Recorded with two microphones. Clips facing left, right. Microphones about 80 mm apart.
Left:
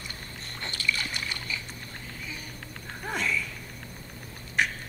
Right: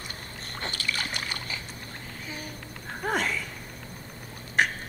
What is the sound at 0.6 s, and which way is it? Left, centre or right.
Boat, right.